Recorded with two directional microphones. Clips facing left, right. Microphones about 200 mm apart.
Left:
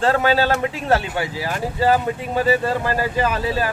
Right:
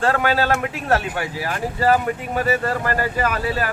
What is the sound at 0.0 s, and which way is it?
Speech, 30° left (ahead or behind).